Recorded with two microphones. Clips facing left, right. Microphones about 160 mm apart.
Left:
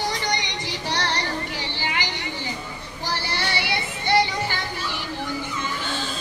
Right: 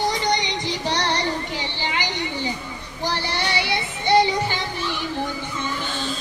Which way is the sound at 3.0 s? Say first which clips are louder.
Right 3 dB; 20° right (ahead or behind).